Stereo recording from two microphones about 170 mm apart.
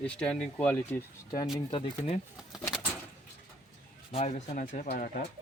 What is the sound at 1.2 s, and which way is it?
Speech, 20° left (ahead or behind).